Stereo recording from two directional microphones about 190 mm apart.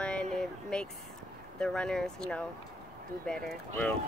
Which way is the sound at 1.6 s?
5° left (ahead or behind).